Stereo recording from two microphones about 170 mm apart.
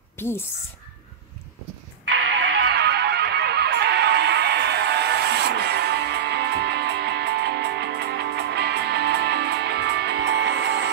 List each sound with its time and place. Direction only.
2.0 s music: 90° right